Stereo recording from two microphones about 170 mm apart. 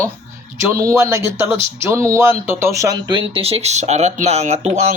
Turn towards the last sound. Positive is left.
turn(degrees=-40)  # may be behind; listen again after turning